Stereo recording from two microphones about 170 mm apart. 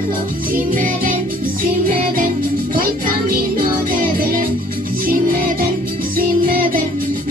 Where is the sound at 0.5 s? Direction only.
55° right (ahead or behind).